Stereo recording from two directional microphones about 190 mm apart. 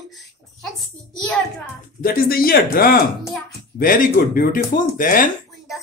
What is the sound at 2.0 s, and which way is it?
Speech, 50° left (ahead or behind).